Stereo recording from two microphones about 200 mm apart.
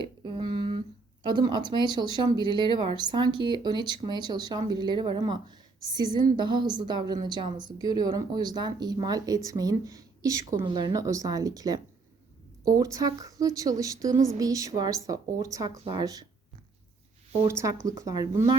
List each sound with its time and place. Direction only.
0.3 s a sound: 25° right (ahead or behind)
1.2 s speech: 20° right (ahead or behind)
17.5 s speech: 15° right (ahead or behind)